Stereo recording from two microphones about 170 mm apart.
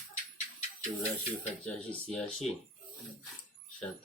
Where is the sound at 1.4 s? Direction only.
10° left (ahead or behind).